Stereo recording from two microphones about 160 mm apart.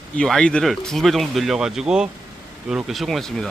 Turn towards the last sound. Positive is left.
turn(degrees=0)  # may be behind; listen again after turning